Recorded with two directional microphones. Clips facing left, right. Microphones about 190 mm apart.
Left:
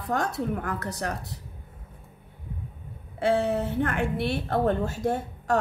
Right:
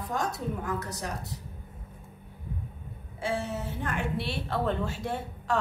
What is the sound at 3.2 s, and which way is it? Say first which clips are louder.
A woman's voice: left 8 dB; 60° left (ahead or behind).